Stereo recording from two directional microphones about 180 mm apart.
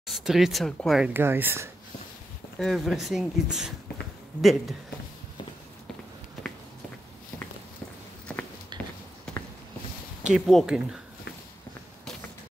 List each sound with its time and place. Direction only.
0.0 s speech: centre (ahead or behind)
2.6 s speech: centre (ahead or behind)
8.7 s a sound: 25° right (ahead or behind)
10.2 s speech: 5° right (ahead or behind)